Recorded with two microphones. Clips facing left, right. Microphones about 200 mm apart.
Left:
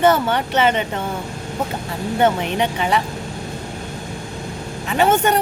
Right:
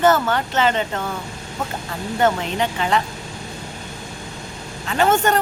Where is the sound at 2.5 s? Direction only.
15° left (ahead or behind).